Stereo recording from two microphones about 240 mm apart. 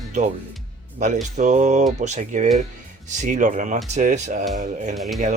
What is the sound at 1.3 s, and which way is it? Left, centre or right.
Speech, right.